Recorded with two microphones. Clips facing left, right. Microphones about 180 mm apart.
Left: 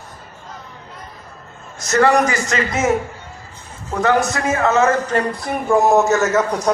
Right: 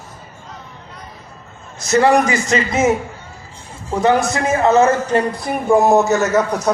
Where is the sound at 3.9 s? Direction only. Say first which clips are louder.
Right 3 dB; 10° right (ahead or behind).